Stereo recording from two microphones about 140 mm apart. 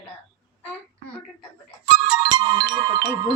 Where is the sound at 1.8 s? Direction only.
30° right (ahead or behind).